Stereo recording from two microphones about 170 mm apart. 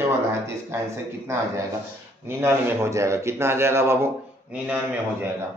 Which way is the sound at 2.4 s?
15° right (ahead or behind).